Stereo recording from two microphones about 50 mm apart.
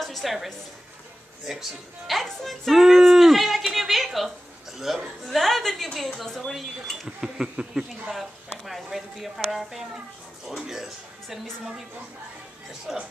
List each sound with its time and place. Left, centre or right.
0.0 s a sound: centre
1.4 s speech: centre
3.7 s a sound: centre
4.7 s speech: centre
5.2 s speech: centre
7.1 s speech: centre
8.1 s speech: centre
12.9 s speech: centre